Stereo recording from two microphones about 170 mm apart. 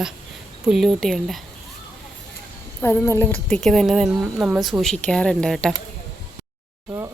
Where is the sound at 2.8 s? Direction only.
15° left (ahead or behind).